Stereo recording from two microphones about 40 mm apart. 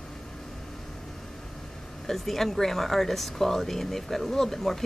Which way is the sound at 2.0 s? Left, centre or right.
Centre.